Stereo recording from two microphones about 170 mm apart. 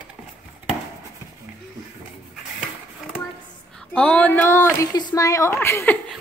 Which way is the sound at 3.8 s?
5° left (ahead or behind).